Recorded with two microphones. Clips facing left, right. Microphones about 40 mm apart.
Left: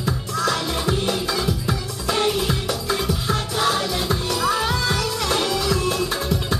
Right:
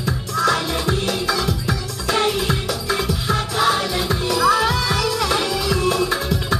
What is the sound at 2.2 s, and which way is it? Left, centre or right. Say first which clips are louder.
Music: right 1 dB; centre.